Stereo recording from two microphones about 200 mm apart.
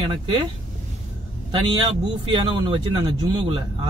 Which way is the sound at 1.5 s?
25° right (ahead or behind).